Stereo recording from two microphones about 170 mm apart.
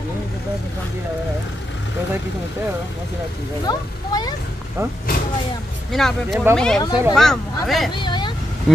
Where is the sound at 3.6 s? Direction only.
25° left (ahead or behind).